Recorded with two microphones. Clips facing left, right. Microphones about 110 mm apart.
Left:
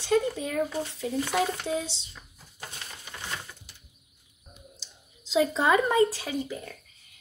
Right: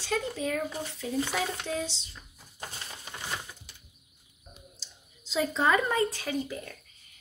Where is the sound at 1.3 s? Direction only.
10° left (ahead or behind).